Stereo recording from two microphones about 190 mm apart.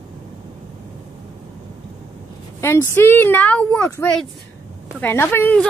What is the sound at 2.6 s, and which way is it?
Speech, 15° left (ahead or behind).